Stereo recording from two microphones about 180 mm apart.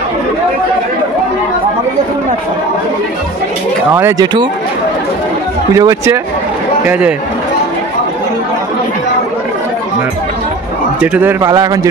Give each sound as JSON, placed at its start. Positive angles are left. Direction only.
{"t": 3.9, "sound": "speech", "side_deg": -20}
{"t": 5.8, "sound": "a man's voice", "side_deg": -20}
{"t": 6.9, "sound": "a man's voice", "side_deg": -5}
{"t": 11.0, "sound": "a man's voice", "side_deg": -10}